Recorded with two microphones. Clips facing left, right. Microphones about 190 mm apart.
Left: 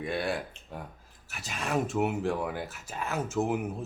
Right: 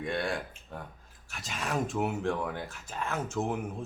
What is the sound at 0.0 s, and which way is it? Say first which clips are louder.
Speech: left 1 dB; 5° left (ahead or behind).